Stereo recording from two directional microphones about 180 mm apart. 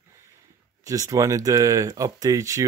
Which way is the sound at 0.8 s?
20° right (ahead or behind).